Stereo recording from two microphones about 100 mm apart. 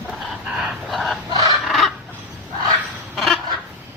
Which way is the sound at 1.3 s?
45° right (ahead or behind).